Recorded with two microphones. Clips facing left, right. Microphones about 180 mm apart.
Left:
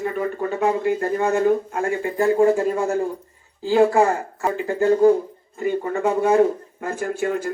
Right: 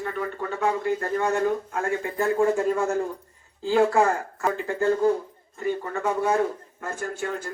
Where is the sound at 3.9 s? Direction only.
15° left (ahead or behind).